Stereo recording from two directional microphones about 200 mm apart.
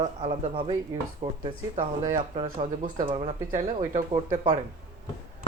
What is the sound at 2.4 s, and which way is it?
Speech, 25° right (ahead or behind).